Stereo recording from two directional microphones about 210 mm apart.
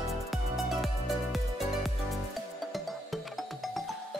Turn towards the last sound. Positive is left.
turn(degrees=0)  # may be behind; listen again after turning